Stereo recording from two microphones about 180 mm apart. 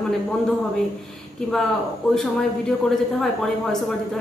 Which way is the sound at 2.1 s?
Centre (ahead or behind).